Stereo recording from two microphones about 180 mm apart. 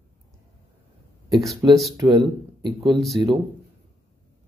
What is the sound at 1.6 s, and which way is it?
Speech, 15° right (ahead or behind).